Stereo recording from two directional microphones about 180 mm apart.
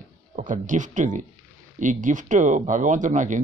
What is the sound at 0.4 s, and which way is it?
Speech, 45° right (ahead or behind).